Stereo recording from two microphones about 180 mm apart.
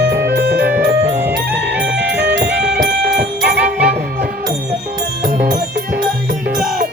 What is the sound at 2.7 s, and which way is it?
Music, 55° right (ahead or behind).